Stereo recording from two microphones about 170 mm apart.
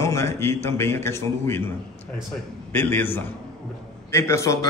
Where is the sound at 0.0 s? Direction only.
15° left (ahead or behind).